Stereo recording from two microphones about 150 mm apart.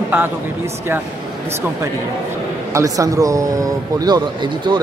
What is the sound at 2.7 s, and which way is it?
A man's voice, 20° right (ahead or behind).